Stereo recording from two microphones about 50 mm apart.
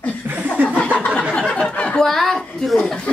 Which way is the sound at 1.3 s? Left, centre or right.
Left.